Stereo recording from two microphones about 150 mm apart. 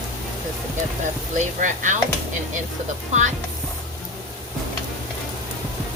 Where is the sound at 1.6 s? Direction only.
55° right (ahead or behind).